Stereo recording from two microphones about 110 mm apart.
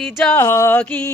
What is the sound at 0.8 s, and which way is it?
Speech, 10° left (ahead or behind).